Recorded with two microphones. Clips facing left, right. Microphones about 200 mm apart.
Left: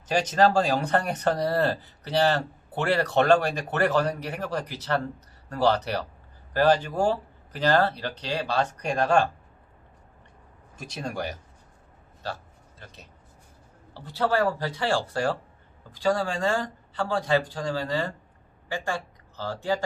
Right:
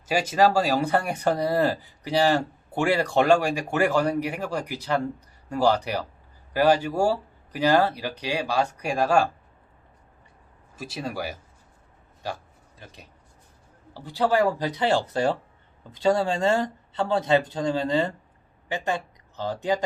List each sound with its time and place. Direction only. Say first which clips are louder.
0.1 s speech: right 1 dB; 10° right (ahead or behind)
10.8 s speech: right 1 dB; 5° right (ahead or behind)
13.9 s speech: right 3 dB; 15° right (ahead or behind)